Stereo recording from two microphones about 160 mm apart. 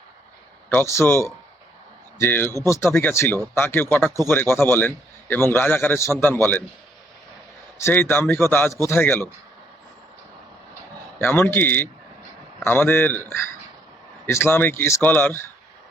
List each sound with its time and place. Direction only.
0.7 s a man's voice: 15° left (ahead or behind)
7.8 s a man's voice: 15° left (ahead or behind)
11.2 s a man's voice: 15° left (ahead or behind)
14.3 s a man's voice: 15° left (ahead or behind)